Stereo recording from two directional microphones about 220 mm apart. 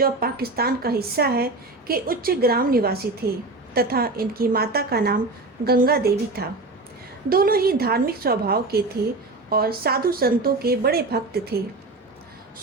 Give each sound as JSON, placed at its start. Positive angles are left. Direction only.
{"t": 0.0, "sound": "a woman's voice", "side_deg": -45}